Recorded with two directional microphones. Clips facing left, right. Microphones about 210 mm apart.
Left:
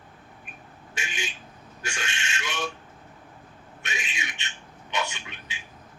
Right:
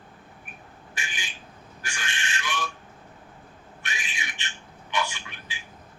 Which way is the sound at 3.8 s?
20° left (ahead or behind).